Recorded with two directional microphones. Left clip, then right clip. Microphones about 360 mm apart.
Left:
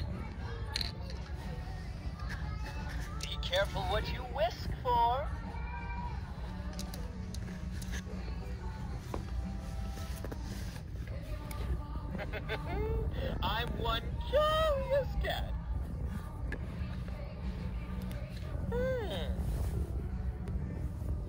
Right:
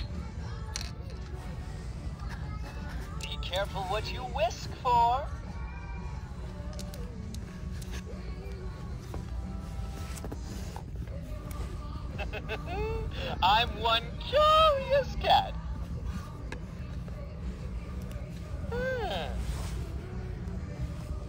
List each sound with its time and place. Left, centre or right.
3.3 s speech: centre
12.7 s speech: centre
18.7 s a sound: centre